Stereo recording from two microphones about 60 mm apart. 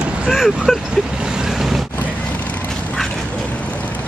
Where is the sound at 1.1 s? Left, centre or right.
Centre.